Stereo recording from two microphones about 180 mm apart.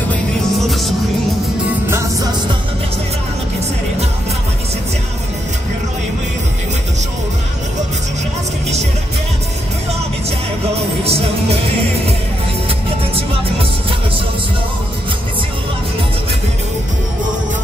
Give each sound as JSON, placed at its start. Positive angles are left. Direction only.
{"t": 0.1, "sound": "music", "side_deg": 0}
{"t": 1.9, "sound": "music", "side_deg": -15}
{"t": 11.1, "sound": "music", "side_deg": -35}
{"t": 12.6, "sound": "music", "side_deg": -30}